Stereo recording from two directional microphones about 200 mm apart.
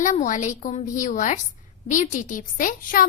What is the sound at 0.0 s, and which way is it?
A woman's voice, 40° left (ahead or behind).